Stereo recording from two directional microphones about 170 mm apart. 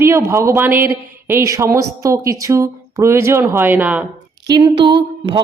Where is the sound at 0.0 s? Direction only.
15° right (ahead or behind).